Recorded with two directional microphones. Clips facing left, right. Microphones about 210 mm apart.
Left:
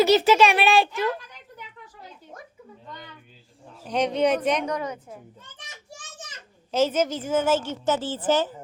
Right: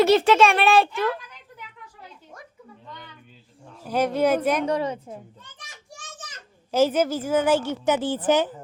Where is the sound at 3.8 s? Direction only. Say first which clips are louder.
Right 1 dB; 5° right (ahead or behind).